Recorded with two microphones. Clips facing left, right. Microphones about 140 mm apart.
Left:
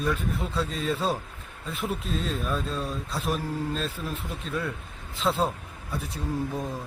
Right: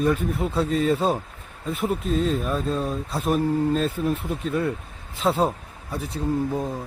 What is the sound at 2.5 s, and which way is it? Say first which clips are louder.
Speech: right 5 dB; 45° right (ahead or behind).